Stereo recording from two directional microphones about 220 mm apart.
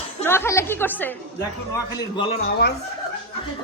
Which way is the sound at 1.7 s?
20° left (ahead or behind).